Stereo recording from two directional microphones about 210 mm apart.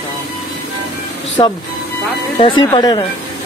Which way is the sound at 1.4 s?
20° left (ahead or behind).